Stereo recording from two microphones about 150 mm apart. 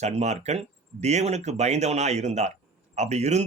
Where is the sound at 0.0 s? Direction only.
50° right (ahead or behind).